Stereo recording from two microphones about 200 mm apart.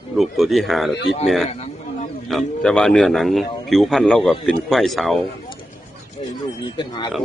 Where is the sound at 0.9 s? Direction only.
60° left (ahead or behind).